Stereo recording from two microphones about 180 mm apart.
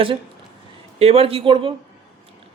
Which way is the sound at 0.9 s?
35° right (ahead or behind).